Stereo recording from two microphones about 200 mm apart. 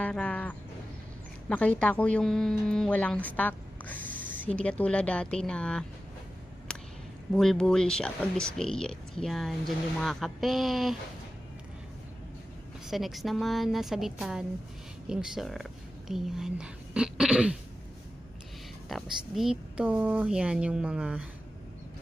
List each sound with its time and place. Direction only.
0.0 s a woman's voice: 5° left (ahead or behind)
4.1 s a sound: 40° right (ahead or behind)
4.5 s speech: 5° left (ahead or behind)
6.7 s a sound: 5° left (ahead or behind)
7.3 s speech: centre (ahead or behind)
12.9 s speech: centre (ahead or behind)
18.9 s speech: centre (ahead or behind)